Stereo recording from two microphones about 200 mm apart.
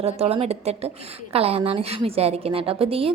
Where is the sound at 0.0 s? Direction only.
30° right (ahead or behind).